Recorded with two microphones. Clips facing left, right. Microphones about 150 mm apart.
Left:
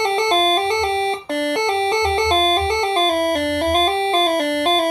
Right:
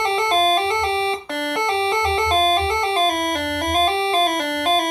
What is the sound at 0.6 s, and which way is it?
Music, 40° left (ahead or behind).